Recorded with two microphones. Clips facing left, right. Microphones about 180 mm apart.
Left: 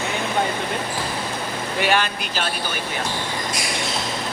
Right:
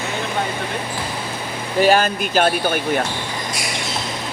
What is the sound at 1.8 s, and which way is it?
Speech, 40° right (ahead or behind).